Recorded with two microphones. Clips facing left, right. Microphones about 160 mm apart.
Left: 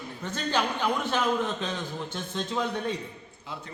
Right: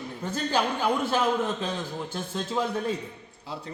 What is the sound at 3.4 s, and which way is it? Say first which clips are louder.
Speech: right 3 dB; 35° right (ahead or behind).